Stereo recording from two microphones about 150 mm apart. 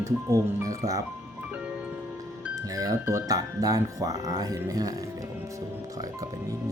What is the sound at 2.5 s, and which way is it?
Speech, 25° right (ahead or behind).